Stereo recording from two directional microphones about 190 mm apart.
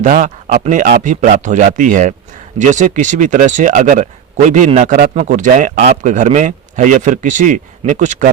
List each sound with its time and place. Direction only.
0.0 s speech: 45° right (ahead or behind)